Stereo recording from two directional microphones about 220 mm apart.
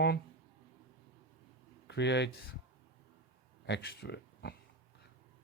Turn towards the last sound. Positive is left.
turn(degrees=50)  # may be behind; listen again after turning